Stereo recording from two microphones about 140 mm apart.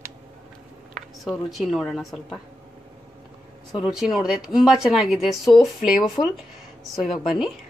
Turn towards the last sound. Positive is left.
turn(degrees=0)  # may be behind; listen again after turning